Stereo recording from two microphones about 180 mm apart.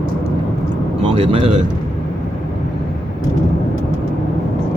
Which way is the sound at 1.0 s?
30° right (ahead or behind).